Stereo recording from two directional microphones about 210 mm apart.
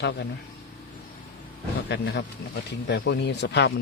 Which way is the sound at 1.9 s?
55° left (ahead or behind).